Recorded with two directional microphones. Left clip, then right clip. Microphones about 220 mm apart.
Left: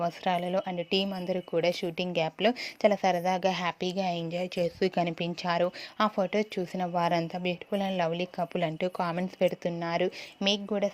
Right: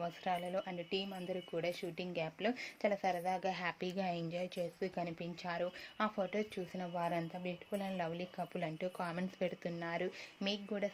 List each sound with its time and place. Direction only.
0.0 s a woman's voice: 30° left (ahead or behind)